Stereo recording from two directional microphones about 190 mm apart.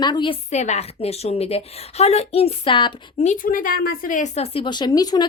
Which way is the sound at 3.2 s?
45° left (ahead or behind).